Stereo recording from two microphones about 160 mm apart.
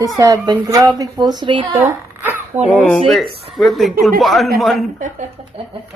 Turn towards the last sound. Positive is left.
turn(degrees=0)  # may be behind; listen again after turning